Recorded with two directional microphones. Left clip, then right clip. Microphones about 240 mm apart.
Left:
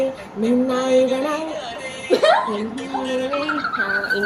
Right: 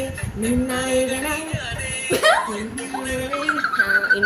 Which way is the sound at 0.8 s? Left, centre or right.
Centre.